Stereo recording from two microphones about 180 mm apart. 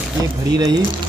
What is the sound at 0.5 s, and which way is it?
Speech, 20° right (ahead or behind).